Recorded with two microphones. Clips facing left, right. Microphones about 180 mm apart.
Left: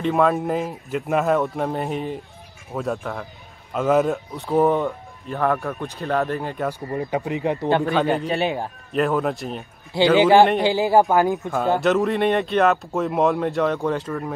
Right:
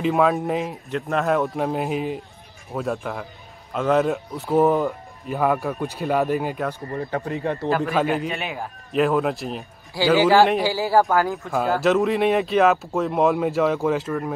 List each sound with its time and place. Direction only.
0.0 s speech: centre (ahead or behind)
6.9 s speech: 15° left (ahead or behind)
7.8 s speech: centre (ahead or behind)
8.3 s a man's voice: 30° left (ahead or behind)
8.9 s speech: centre (ahead or behind)
10.1 s speech: 20° left (ahead or behind)
11.8 s speech: centre (ahead or behind)